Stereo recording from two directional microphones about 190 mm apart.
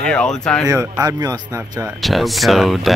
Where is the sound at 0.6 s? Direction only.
15° right (ahead or behind).